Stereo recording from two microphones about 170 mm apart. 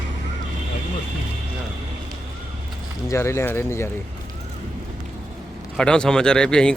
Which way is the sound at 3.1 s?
15° left (ahead or behind).